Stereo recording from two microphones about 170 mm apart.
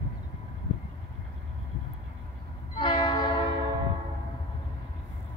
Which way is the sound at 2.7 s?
30° left (ahead or behind).